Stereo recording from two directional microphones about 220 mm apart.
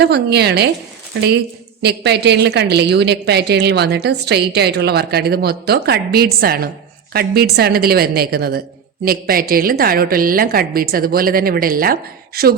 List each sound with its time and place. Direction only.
0.0 s a woman's voice: 50° right (ahead or behind)
1.8 s a woman's voice: 50° right (ahead or behind)